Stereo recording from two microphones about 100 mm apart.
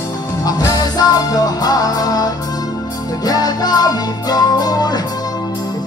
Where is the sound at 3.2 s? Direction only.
40° left (ahead or behind).